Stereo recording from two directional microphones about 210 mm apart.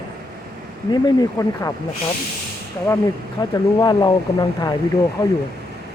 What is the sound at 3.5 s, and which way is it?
Speech, 20° left (ahead or behind).